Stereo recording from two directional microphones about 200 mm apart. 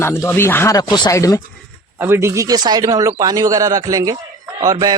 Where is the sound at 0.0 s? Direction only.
10° left (ahead or behind).